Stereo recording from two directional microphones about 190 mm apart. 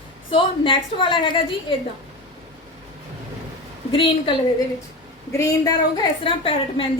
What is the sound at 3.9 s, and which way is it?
Speech, 25° left (ahead or behind).